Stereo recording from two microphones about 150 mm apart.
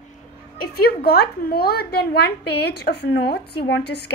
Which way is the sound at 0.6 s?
90° left.